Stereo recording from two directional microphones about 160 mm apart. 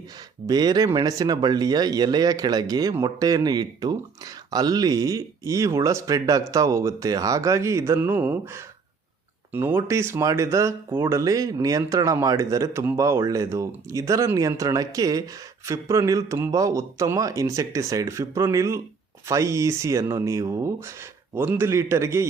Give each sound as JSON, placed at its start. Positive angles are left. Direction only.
{"t": 0.4, "sound": "a man's voice", "side_deg": -25}